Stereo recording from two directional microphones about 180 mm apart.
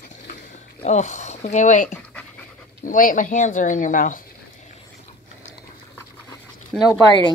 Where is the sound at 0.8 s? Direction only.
40° left (ahead or behind).